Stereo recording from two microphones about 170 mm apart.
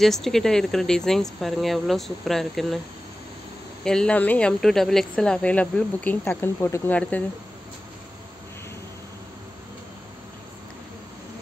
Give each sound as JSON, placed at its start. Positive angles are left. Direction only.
{"t": 0.0, "sound": "speech", "side_deg": 0}
{"t": 3.8, "sound": "a woman's voice", "side_deg": 5}